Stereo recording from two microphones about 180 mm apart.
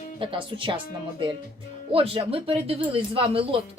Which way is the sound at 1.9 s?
30° right (ahead or behind).